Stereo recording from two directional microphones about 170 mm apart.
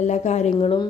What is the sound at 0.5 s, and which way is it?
Speech, 30° left (ahead or behind).